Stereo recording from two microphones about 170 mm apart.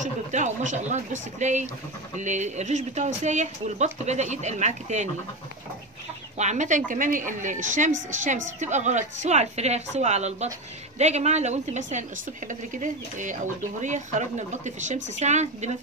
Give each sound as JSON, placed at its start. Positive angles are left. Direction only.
{"t": 0.0, "sound": "speech", "side_deg": -45}
{"t": 6.3, "sound": "a woman's voice", "side_deg": -45}